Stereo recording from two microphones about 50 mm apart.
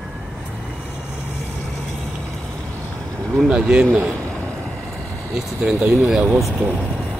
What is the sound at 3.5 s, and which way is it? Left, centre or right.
Speech, right.